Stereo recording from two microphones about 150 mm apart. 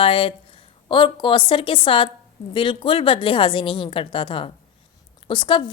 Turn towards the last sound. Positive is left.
turn(degrees=35)  # may be behind; listen again after turning